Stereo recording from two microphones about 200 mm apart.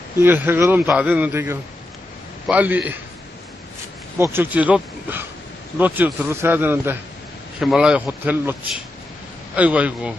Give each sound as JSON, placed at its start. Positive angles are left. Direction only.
{"t": 0.2, "sound": "speech", "side_deg": -10}
{"t": 4.2, "sound": "speech", "side_deg": -10}
{"t": 9.6, "sound": "speech", "side_deg": -5}